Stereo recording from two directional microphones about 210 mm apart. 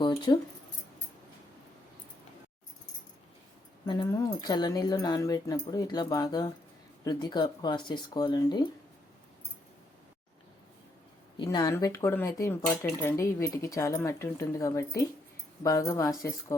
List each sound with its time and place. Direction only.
0.3 s speech: 20° left (ahead or behind)
3.8 s speech: 20° left (ahead or behind)
11.3 s speech: 20° left (ahead or behind)